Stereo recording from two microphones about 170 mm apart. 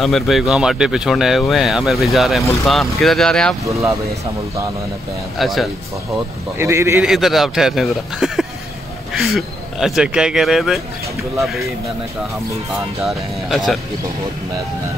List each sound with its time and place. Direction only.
0.0 s speech: centre (ahead or behind)
5.4 s speech: centre (ahead or behind)
6.6 s speech: 15° right (ahead or behind)
7.1 s speech: centre (ahead or behind)
13.0 s speech: centre (ahead or behind)